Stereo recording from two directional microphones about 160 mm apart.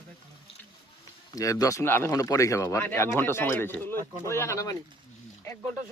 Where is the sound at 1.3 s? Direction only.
20° left (ahead or behind).